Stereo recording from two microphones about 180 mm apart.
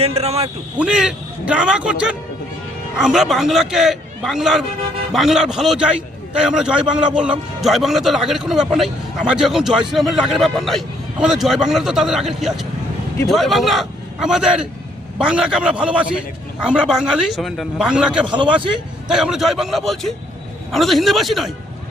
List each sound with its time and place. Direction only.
0.0 s a man's voice: 35° right (ahead or behind)
0.8 s a man's voice: 5° right (ahead or behind)
18.3 s a man's voice: 25° right (ahead or behind)
19.0 s a man's voice: 5° right (ahead or behind)